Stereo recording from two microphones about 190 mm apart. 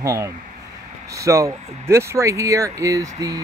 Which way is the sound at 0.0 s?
15° right (ahead or behind).